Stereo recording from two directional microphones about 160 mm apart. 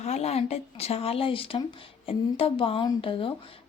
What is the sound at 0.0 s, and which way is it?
A woman's voice, 40° left (ahead or behind).